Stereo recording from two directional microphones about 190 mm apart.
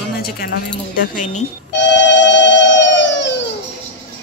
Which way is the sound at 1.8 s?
70° left (ahead or behind).